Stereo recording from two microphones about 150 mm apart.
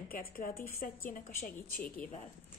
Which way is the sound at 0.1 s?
75° left (ahead or behind).